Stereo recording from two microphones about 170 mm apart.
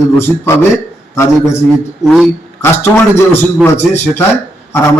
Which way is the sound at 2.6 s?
15° left (ahead or behind).